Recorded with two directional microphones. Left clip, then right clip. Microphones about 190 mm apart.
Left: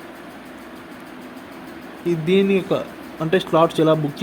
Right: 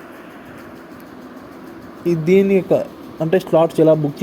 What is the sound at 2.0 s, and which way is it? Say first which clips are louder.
Speech: right 4 dB; 20° right (ahead or behind).